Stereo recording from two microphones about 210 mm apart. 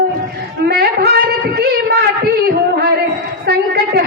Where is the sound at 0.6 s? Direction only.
45° right (ahead or behind).